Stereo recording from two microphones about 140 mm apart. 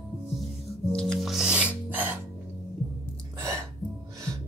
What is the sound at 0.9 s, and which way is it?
Music, 5° left (ahead or behind).